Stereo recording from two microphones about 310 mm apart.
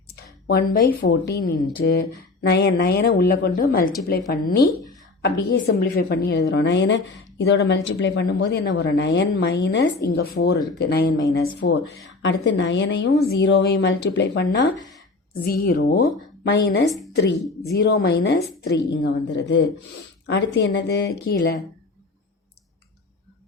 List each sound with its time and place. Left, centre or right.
0.2 s a sound: left
1.0 s speech: left
17.8 s speech: left